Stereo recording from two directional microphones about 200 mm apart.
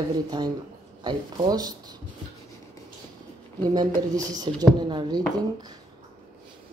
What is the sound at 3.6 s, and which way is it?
Speech, 20° right (ahead or behind).